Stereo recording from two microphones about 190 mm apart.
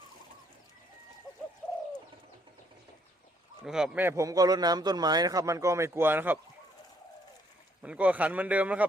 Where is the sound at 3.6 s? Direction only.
5° right (ahead or behind).